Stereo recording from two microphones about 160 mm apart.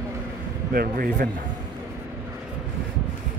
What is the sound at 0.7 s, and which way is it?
Speech, 70° right (ahead or behind).